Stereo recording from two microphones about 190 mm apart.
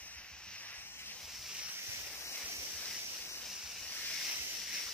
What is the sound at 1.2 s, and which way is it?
Boat, centre (ahead or behind).